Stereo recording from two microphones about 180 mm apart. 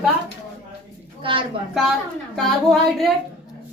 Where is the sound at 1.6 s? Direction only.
30° right (ahead or behind).